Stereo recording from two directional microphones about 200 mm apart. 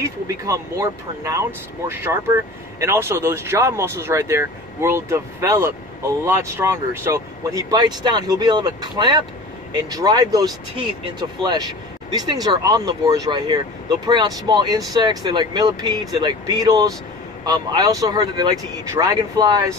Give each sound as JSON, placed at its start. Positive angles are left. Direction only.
{"t": 0.0, "sound": "speech", "side_deg": -15}